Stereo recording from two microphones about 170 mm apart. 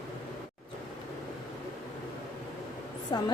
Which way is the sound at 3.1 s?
25° left (ahead or behind).